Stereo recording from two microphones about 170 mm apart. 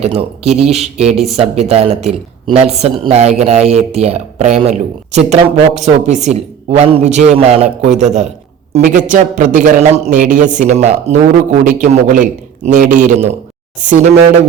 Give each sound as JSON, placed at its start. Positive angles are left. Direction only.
{"t": 0.0, "sound": "a man's voice", "side_deg": -35}